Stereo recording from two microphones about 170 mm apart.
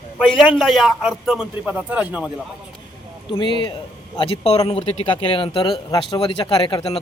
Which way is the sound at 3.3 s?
30° left (ahead or behind).